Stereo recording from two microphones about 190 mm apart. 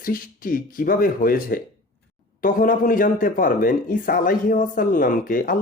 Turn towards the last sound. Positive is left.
turn(degrees=45)  # may be behind; listen again after turning